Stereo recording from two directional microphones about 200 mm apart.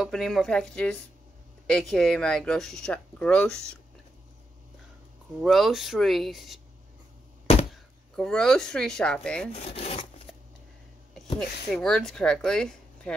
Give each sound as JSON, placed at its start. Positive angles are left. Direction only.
{"t": 0.0, "sound": "speech", "side_deg": 0}
{"t": 5.4, "sound": "speech", "side_deg": 0}
{"t": 7.7, "sound": "speech", "side_deg": 0}
{"t": 9.5, "sound": "wood", "side_deg": 30}
{"t": 11.3, "sound": "speech", "side_deg": 5}